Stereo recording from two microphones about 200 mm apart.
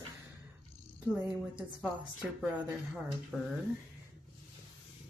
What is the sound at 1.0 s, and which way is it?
Speech, 10° right (ahead or behind).